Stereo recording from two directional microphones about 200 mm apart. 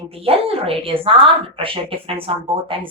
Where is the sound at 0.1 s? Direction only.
30° right (ahead or behind).